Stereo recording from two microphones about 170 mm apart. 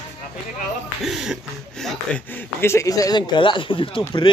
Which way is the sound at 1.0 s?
5° right (ahead or behind).